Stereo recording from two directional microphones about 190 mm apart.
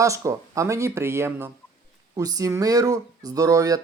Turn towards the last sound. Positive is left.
turn(degrees=-20)  # may be behind; listen again after turning